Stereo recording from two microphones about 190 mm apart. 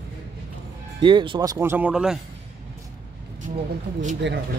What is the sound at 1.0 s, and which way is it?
Speech, 25° right (ahead or behind).